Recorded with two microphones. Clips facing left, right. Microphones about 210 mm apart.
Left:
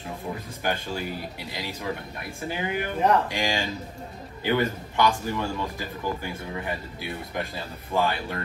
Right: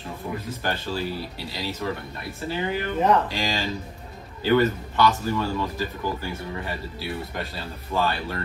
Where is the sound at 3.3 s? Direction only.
15° left (ahead or behind).